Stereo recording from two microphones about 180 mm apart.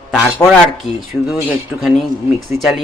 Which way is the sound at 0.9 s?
35° left (ahead or behind).